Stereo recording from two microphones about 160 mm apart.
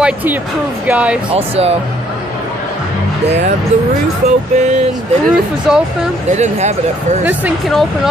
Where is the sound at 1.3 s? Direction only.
40° right (ahead or behind).